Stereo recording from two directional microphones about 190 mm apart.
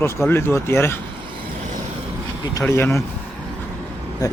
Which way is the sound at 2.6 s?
10° left (ahead or behind).